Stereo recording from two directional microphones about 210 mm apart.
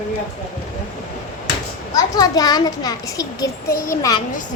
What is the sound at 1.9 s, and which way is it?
A child's voice, 15° left (ahead or behind).